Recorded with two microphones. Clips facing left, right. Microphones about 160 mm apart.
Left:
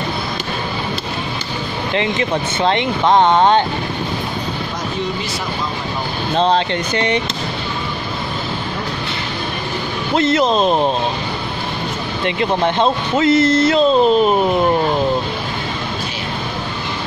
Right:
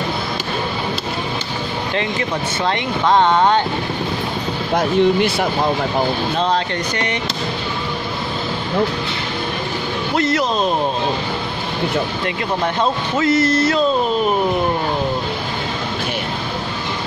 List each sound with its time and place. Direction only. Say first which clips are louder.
2.6 s speech: left 3 dB; 20° left (ahead or behind)
4.7 s speech: right 12 dB; 60° right (ahead or behind)
6.3 s speech: left 3 dB; 30° left (ahead or behind)
10.1 s speech: left 4 dB; 25° left (ahead or behind)
12.4 s speech: left 4 dB; 25° left (ahead or behind)